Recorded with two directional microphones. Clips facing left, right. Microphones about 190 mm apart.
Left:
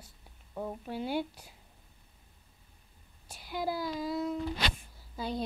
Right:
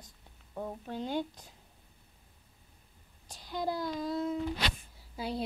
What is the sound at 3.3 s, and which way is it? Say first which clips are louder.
Child singing: even; 10° left (ahead or behind).